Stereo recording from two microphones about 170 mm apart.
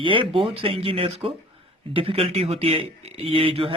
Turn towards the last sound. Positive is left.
turn(degrees=-30)  # may be behind; listen again after turning